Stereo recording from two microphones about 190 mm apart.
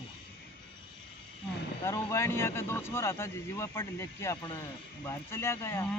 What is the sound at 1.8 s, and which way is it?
Speech, 15° left (ahead or behind).